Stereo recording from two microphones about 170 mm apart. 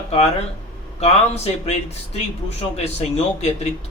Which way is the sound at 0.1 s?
40° left (ahead or behind).